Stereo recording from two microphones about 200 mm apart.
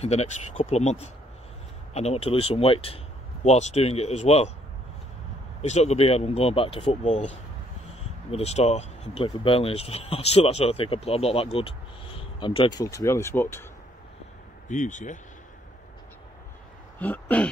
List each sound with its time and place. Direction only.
0.0 s speech: 30° left (ahead or behind)
5.6 s speech: 35° left (ahead or behind); by 13.7 s 10° left (ahead or behind)
14.7 s speech: 40° left (ahead or behind)
17.0 s a sound: 10° left (ahead or behind)